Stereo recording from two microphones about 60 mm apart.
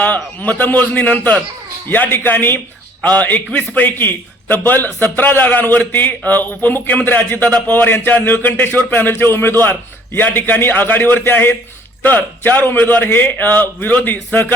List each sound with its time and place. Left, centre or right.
0.0 s a man's voice: left